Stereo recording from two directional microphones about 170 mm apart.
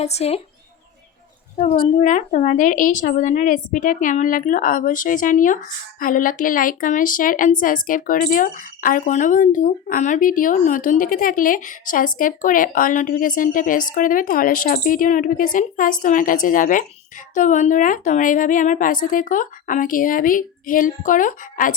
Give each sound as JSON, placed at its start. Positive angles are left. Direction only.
{"t": 0.0, "sound": "speech", "side_deg": 40}
{"t": 1.8, "sound": "speech", "side_deg": 45}